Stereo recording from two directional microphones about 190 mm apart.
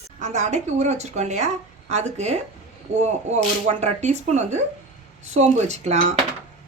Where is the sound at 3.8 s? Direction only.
35° right (ahead or behind).